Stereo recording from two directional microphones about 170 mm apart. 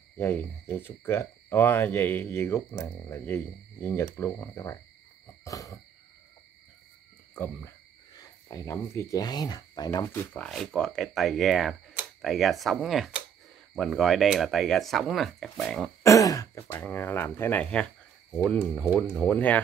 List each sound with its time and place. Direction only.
0.2 s speech: 10° left (ahead or behind)
5.4 s owl: 20° left (ahead or behind)
7.3 s speech: 10° left (ahead or behind)
16.0 s speech: 20° left (ahead or behind)